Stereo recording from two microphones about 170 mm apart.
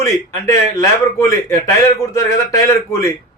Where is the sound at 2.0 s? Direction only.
20° left (ahead or behind).